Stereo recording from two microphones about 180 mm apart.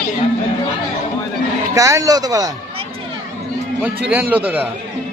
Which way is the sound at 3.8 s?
10° right (ahead or behind).